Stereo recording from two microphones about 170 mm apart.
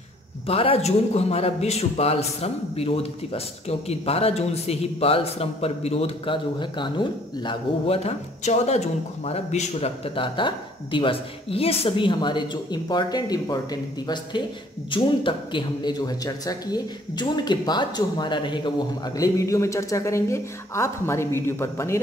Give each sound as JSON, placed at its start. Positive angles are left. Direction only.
{"t": 0.5, "sound": "a man's voice", "side_deg": 35}